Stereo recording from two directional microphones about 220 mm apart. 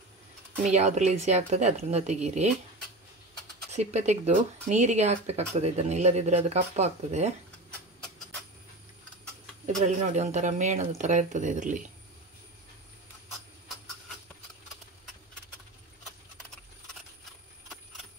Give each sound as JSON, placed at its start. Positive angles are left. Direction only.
{"t": 0.7, "sound": "speech", "side_deg": -30}
{"t": 3.7, "sound": "speech", "side_deg": -30}
{"t": 9.8, "sound": "speech", "side_deg": -30}